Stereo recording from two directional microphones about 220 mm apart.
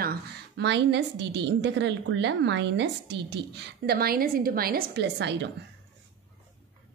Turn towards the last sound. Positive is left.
turn(degrees=-50)  # may be behind; listen again after turning